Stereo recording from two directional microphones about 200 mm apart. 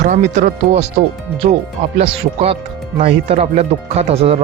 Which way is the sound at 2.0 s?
30° right (ahead or behind).